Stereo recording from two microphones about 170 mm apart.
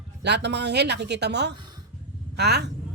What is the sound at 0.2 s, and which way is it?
A woman's voice, 85° right.